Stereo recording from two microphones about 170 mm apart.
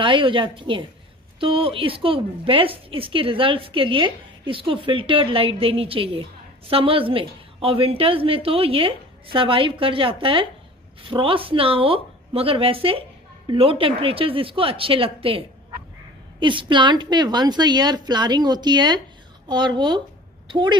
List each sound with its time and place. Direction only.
0.0 s a woman's voice: 30° right (ahead or behind)